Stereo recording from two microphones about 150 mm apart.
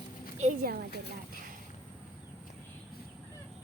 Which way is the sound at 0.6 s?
80° right.